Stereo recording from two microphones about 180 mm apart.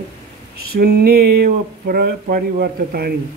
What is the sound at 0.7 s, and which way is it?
Speech, 60° right (ahead or behind).